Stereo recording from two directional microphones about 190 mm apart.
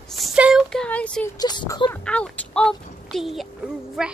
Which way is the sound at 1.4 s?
20° left (ahead or behind).